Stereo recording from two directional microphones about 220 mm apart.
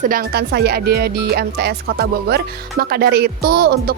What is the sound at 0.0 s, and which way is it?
Speech, 40° right (ahead or behind).